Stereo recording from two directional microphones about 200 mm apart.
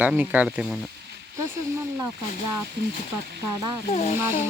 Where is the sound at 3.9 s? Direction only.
35° left (ahead or behind).